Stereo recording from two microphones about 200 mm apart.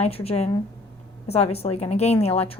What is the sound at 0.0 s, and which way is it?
A woman's voice, 30° left (ahead or behind).